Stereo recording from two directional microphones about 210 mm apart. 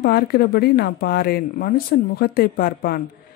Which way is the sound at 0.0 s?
50° left (ahead or behind).